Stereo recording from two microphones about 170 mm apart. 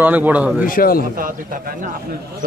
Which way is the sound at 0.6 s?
55° left (ahead or behind).